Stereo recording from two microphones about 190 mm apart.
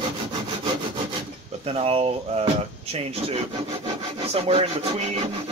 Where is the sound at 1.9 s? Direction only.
30° right (ahead or behind).